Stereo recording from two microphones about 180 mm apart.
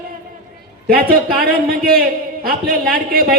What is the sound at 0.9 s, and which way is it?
A man's voice, 55° right (ahead or behind).